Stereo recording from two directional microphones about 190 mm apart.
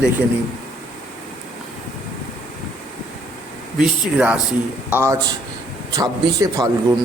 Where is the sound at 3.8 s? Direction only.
5° right (ahead or behind).